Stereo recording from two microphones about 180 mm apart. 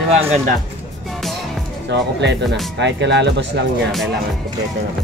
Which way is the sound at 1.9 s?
70° right (ahead or behind).